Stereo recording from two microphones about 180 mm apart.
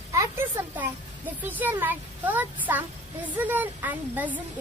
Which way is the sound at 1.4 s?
10° right (ahead or behind).